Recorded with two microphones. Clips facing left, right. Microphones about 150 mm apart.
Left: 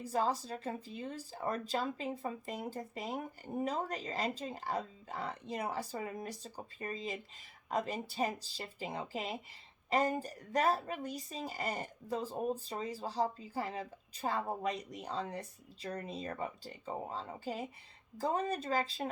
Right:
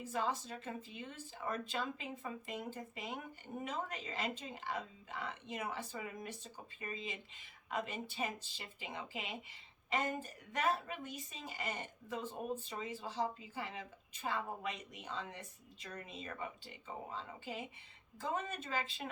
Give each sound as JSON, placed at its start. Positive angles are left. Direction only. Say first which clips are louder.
{"t": 0.0, "sound": "speech", "louder": "left 5 dB", "side_deg": 35}